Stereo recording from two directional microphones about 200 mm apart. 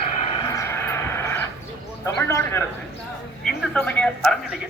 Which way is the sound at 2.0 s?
15° left (ahead or behind).